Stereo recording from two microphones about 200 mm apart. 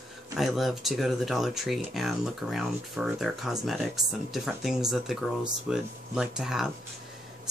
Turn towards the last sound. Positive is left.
turn(degrees=0)  # may be behind; listen again after turning